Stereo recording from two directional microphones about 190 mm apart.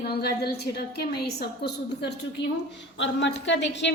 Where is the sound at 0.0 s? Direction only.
55° left (ahead or behind).